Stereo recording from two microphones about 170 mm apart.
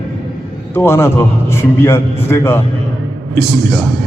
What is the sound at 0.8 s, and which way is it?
A man's voice, 15° left (ahead or behind).